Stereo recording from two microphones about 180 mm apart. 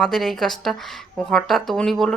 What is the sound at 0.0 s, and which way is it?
Speech, centre (ahead or behind).